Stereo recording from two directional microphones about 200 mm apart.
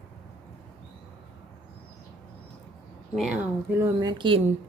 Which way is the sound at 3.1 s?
Centre (ahead or behind).